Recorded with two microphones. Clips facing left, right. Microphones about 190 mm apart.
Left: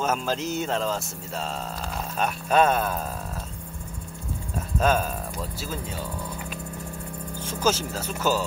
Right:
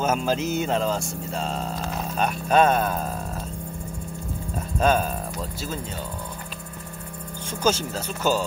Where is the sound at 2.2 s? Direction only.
5° left (ahead or behind).